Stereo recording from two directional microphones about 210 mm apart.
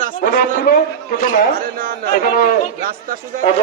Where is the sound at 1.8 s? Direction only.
45° right (ahead or behind).